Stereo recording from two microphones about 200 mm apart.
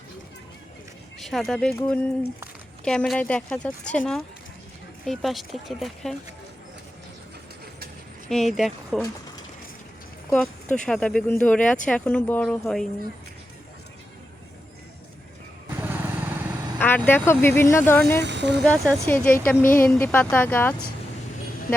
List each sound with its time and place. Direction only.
1.2 s a woman's voice: centre (ahead or behind)
8.3 s a woman's voice: centre (ahead or behind)
10.2 s a woman's voice: 5° left (ahead or behind)
15.7 s motorcycle: 10° right (ahead or behind)
16.7 s vehicle: 10° left (ahead or behind)
17.1 s speech: 10° left (ahead or behind)
18.2 s speech: 60° right (ahead or behind)
18.6 s speech: 10° left (ahead or behind)